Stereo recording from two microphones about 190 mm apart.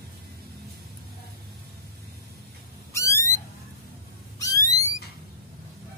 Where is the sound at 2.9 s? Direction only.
15° left (ahead or behind).